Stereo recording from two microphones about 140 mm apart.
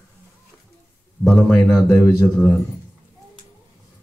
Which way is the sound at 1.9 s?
15° left (ahead or behind).